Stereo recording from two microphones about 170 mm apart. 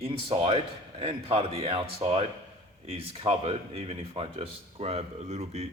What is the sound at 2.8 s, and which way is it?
Speech, 35° right (ahead or behind).